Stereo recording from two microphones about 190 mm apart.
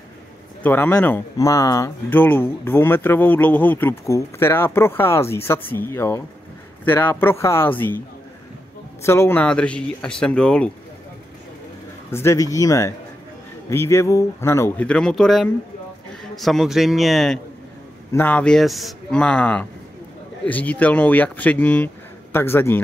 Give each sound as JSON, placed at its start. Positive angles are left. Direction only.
{"t": 0.6, "sound": "speech", "side_deg": 10}
{"t": 9.0, "sound": "speech", "side_deg": 15}
{"t": 12.1, "sound": "speech", "side_deg": 15}